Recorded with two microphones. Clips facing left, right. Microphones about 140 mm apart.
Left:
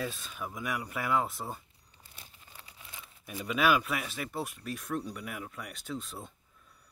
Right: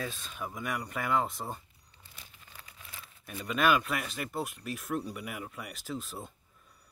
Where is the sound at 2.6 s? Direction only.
25° left (ahead or behind).